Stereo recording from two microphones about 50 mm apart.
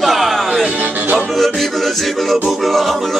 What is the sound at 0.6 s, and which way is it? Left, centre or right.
Music, right.